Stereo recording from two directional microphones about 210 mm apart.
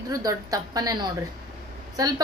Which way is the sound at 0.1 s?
15° right (ahead or behind).